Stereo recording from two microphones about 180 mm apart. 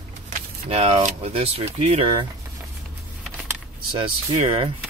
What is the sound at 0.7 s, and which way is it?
Speech, 35° right (ahead or behind).